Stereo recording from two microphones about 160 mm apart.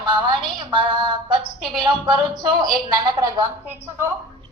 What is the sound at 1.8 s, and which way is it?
A woman's voice, 30° right (ahead or behind).